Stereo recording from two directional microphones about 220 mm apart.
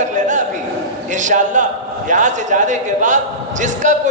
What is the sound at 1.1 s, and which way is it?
A man's voice, 35° right (ahead or behind).